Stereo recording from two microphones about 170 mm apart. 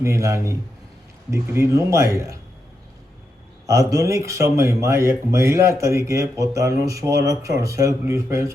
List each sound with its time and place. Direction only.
0.0 s speech: 15° right (ahead or behind)
3.7 s speech: 20° right (ahead or behind)